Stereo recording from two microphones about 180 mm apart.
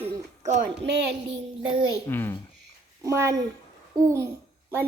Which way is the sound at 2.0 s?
10° left (ahead or behind).